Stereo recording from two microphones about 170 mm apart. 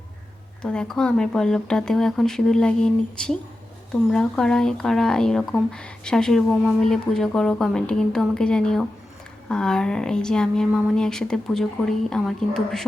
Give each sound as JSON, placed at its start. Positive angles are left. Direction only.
{"t": 0.6, "sound": "speech", "side_deg": 5}